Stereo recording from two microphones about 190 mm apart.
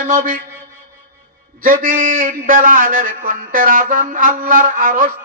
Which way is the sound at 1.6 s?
50° right (ahead or behind).